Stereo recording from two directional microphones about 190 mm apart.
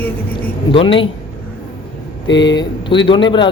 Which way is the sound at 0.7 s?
25° left (ahead or behind).